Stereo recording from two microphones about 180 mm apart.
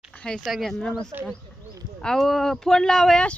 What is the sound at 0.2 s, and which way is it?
Speech, 5° left (ahead or behind).